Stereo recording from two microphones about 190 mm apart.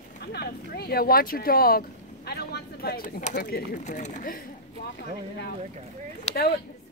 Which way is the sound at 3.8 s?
40° left (ahead or behind).